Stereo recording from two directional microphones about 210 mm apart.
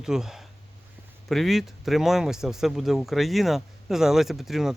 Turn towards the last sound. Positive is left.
turn(degrees=0)  # may be behind; listen again after turning